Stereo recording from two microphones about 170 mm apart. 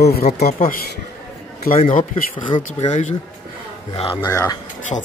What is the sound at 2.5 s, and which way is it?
Speech, 30° left (ahead or behind).